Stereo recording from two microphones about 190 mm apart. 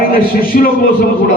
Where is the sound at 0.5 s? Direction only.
45° left (ahead or behind).